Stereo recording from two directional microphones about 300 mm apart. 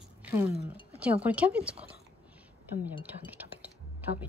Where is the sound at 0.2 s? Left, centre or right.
Centre.